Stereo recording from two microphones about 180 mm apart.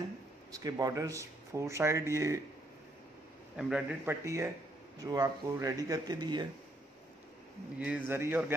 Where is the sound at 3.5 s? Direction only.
5° right (ahead or behind); by 6.4 s 25° right (ahead or behind).